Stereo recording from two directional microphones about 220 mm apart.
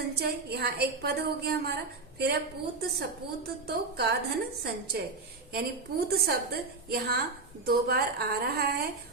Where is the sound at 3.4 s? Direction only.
45° right (ahead or behind).